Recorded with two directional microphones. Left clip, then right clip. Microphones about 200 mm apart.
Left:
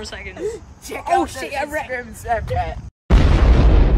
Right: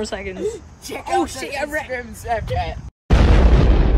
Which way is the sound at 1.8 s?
Centre (ahead or behind).